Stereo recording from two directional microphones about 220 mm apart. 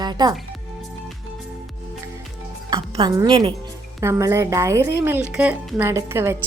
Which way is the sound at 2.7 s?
20° right (ahead or behind).